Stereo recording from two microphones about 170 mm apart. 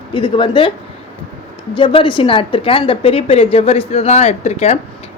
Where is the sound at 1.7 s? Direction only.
30° left (ahead or behind).